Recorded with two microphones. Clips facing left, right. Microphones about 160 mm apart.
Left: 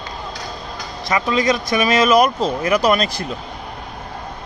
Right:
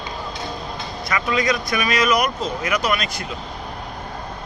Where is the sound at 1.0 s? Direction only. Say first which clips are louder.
Left 4 dB; 25° left (ahead or behind).